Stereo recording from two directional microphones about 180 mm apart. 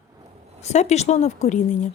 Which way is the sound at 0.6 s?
40° left (ahead or behind).